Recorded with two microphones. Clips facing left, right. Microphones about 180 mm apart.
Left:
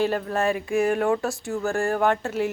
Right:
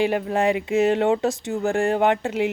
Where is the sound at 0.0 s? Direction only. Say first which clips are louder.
Right 3 dB; 15° right (ahead or behind).